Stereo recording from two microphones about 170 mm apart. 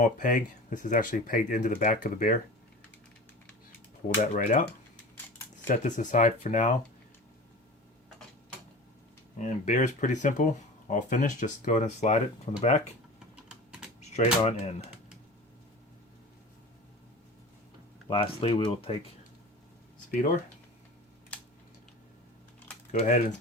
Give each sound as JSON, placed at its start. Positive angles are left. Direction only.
{"t": 0.0, "sound": "speech", "side_deg": 50}
{"t": 4.4, "sound": "speech", "side_deg": 50}
{"t": 5.6, "sound": "speech", "side_deg": 50}
{"t": 9.4, "sound": "speech", "side_deg": 45}
{"t": 13.1, "sound": "typing", "side_deg": -5}
{"t": 14.0, "sound": "speech", "side_deg": 40}
{"t": 18.1, "sound": "speech", "side_deg": 30}
{"t": 22.9, "sound": "speech", "side_deg": 45}